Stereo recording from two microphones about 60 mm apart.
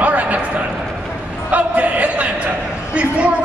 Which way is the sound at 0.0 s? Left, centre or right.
Right.